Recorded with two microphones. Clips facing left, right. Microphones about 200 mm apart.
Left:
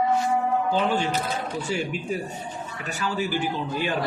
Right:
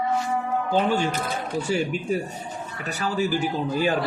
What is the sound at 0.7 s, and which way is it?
A man's voice, 45° right (ahead or behind).